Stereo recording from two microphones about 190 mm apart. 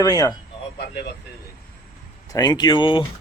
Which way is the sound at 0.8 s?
60° left (ahead or behind).